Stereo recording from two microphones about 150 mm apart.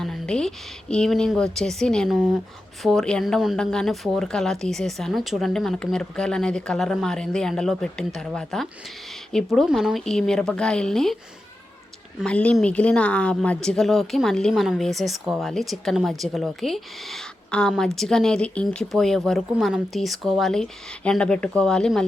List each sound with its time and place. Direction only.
0.0 s a woman's voice: 5° left (ahead or behind)
12.2 s a woman's voice: 10° left (ahead or behind)